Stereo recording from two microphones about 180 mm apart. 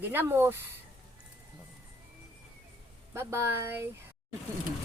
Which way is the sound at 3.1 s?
15° right (ahead or behind).